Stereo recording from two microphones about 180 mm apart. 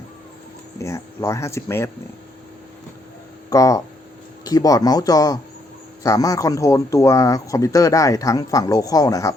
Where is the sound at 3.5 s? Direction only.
20° left (ahead or behind).